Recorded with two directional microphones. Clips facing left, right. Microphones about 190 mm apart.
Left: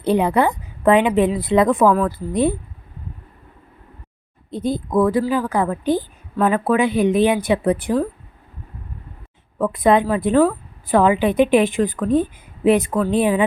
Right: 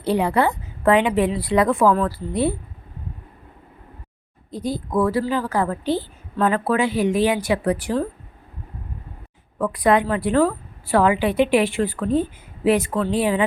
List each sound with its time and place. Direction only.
0.0 s a woman's voice: 20° left (ahead or behind)
4.5 s a woman's voice: 20° left (ahead or behind)
9.7 s a woman's voice: 20° left (ahead or behind)